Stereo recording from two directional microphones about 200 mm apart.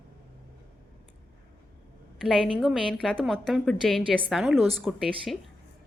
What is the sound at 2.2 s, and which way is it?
A woman's voice, centre (ahead or behind).